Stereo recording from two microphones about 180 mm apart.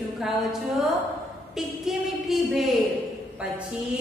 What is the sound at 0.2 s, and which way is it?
A woman's voice, centre (ahead or behind).